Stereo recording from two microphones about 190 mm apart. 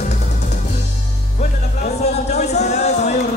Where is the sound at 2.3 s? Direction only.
35° left (ahead or behind).